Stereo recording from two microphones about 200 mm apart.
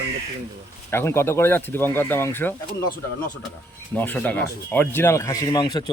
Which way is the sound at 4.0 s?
10° left (ahead or behind).